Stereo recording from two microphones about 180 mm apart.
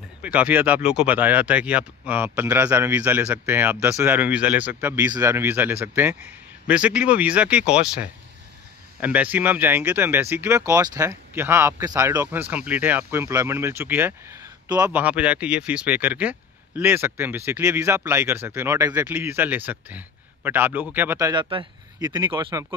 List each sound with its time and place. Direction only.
0.2 s speech: 10° right (ahead or behind)
21.3 s speech: 25° right (ahead or behind)